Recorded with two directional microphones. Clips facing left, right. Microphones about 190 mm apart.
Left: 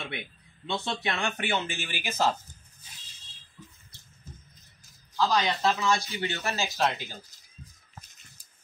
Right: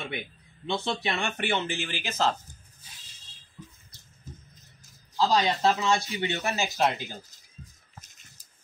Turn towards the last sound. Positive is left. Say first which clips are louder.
# right 2 dB
turn(degrees=-15)  # may be behind; listen again after turning